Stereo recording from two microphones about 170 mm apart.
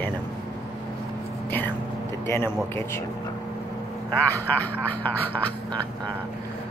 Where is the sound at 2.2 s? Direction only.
15° left (ahead or behind).